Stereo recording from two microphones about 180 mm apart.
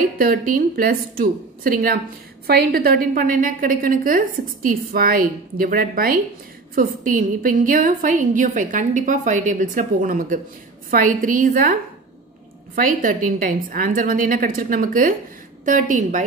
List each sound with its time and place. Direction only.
0.2 s a woman's voice: 50° right (ahead or behind)